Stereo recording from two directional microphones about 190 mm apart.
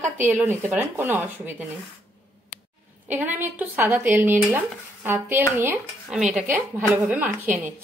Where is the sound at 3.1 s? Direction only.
10° right (ahead or behind).